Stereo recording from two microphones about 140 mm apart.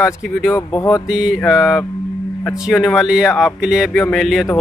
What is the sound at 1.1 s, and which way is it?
Speech, 5° right (ahead or behind).